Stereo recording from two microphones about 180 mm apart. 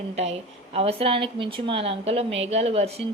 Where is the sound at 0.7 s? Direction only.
35° right (ahead or behind).